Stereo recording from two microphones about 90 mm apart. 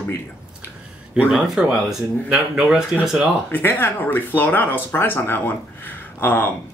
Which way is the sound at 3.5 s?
25° left (ahead or behind).